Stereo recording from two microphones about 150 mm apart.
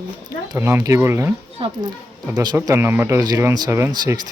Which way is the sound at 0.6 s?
15° right (ahead or behind).